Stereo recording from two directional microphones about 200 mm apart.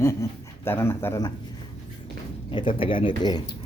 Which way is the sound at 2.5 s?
25° left (ahead or behind).